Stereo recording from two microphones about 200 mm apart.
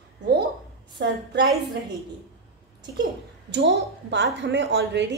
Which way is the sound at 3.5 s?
60° right (ahead or behind).